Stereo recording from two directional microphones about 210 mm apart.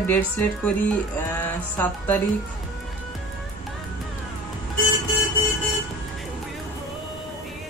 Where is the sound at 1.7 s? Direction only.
10° left (ahead or behind).